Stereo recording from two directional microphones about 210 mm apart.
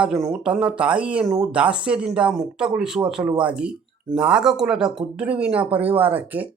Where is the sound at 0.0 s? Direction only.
5° right (ahead or behind).